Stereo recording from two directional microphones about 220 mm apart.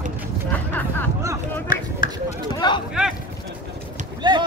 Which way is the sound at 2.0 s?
40° left (ahead or behind).